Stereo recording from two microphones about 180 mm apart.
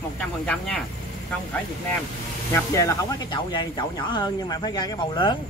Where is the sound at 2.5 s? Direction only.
15° left (ahead or behind).